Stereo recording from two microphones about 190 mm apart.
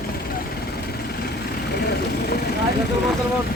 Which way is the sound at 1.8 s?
60° left (ahead or behind).